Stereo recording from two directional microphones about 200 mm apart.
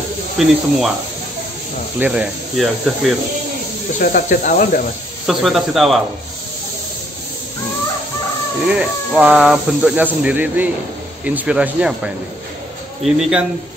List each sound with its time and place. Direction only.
0.4 s speech: centre (ahead or behind)
2.0 s speech: 5° right (ahead or behind)
4.0 s speech: 40° left (ahead or behind)
5.2 s speech: centre (ahead or behind)
8.6 s speech: 5° right (ahead or behind)